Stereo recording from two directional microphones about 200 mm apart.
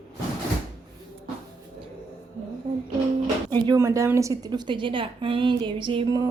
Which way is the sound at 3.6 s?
15° right (ahead or behind).